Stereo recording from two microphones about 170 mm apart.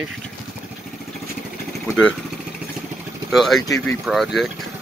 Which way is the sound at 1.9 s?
5° left (ahead or behind).